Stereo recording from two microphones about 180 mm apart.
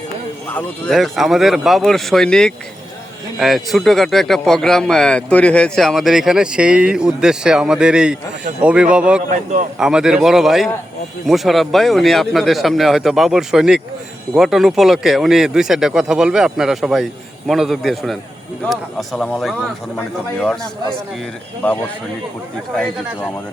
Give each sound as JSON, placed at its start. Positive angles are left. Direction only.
{"t": 0.5, "sound": "a man's voice", "side_deg": 0}
{"t": 9.3, "sound": "speech", "side_deg": -40}
{"t": 9.7, "sound": "a man's voice", "side_deg": -5}